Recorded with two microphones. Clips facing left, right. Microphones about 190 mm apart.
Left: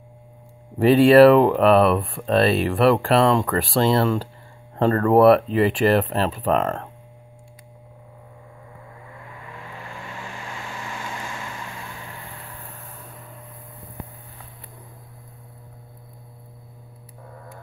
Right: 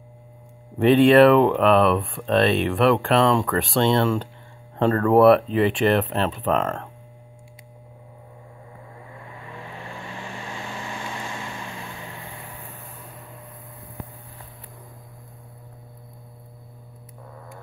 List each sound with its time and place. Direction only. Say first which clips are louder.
0.7 s speech: left 2 dB; 5° left (ahead or behind)
10.1 s vehicle: right 1 dB; 25° right (ahead or behind)